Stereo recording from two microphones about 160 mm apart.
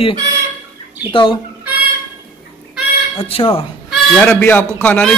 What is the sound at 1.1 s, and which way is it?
Speech, 30° left (ahead or behind).